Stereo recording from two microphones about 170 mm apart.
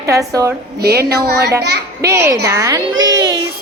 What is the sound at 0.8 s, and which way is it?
Speech, 70° right (ahead or behind).